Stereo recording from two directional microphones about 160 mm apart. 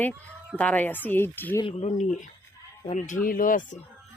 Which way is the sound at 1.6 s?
35° left (ahead or behind).